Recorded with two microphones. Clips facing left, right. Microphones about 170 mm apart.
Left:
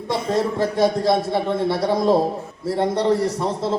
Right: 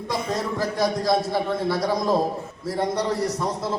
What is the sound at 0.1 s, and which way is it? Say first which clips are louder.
A man's voice: left 5 dB; 25° left (ahead or behind).